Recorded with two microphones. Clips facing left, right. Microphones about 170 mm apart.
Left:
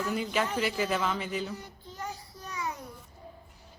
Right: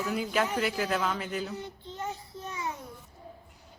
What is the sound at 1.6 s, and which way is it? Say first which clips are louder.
Child singing: right 4 dB; 25° right (ahead or behind).